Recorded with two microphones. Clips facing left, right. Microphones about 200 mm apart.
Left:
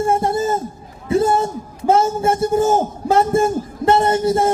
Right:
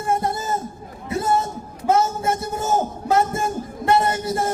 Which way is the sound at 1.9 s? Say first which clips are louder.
Left 4 dB; 30° left (ahead or behind).